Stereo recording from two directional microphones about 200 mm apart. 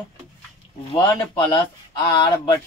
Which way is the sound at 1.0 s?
20° left (ahead or behind).